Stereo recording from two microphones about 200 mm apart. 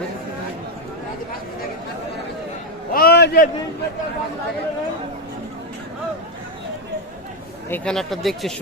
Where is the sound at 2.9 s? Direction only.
50° left (ahead or behind).